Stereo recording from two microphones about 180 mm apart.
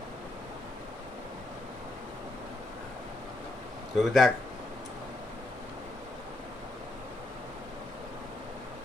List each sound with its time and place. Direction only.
3.9 s speech: centre (ahead or behind)